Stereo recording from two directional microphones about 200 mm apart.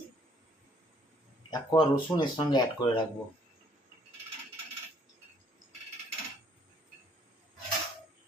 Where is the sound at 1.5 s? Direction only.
20° left (ahead or behind).